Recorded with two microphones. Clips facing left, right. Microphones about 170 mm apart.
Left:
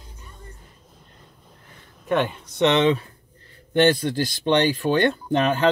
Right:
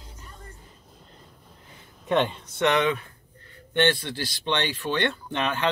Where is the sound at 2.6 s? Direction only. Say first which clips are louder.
Left 4 dB; 25° left (ahead or behind).